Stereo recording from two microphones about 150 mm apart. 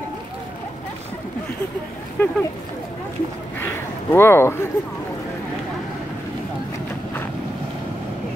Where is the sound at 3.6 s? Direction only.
15° left (ahead or behind).